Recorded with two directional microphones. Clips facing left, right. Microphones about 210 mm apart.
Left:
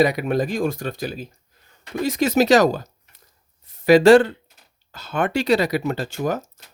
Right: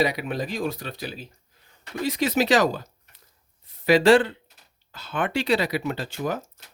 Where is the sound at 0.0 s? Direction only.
50° left (ahead or behind).